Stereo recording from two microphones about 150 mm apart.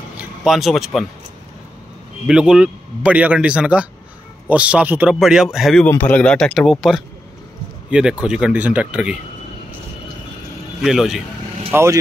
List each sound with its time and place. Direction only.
0.2 s speech: 5° right (ahead or behind)
2.2 s a man's voice: 5° right (ahead or behind)
5.9 s speech: 10° left (ahead or behind); by 9.1 s 10° right (ahead or behind)
10.8 s speech: centre (ahead or behind)
11.7 s speech: 20° right (ahead or behind)